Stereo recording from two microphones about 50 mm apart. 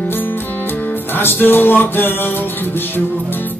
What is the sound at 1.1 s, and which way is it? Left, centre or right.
Music, left.